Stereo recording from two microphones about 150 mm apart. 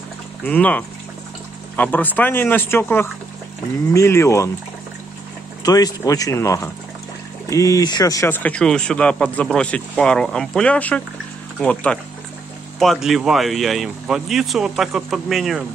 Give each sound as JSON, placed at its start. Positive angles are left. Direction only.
{"t": 0.5, "sound": "speech", "side_deg": 10}
{"t": 5.6, "sound": "speech", "side_deg": 25}
{"t": 8.3, "sound": "speech", "side_deg": 10}